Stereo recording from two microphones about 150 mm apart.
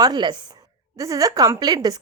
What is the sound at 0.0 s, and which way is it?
A woman's voice, 30° right (ahead or behind).